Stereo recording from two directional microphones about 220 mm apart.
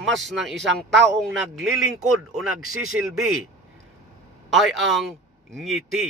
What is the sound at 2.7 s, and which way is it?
Speech, 75° right (ahead or behind).